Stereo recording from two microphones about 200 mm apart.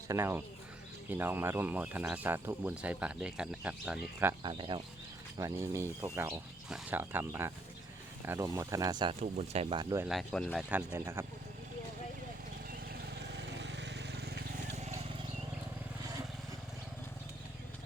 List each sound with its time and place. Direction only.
0.1 s speech: 10° right (ahead or behind)
4.4 s speech: 20° right (ahead or behind)
9.2 s speech: 35° right (ahead or behind)
10.1 s speech: centre (ahead or behind)
13.3 s vehicle: 60° right (ahead or behind)
14.8 s vehicle: 35° right (ahead or behind)